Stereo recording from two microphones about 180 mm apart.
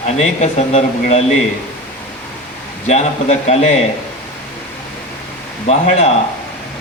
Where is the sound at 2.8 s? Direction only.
40° left (ahead or behind).